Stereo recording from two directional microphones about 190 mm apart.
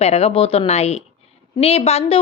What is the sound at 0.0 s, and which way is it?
A woman's voice, 30° left (ahead or behind).